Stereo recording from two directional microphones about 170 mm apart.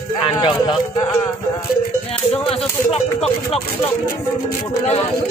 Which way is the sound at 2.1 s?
35° left (ahead or behind).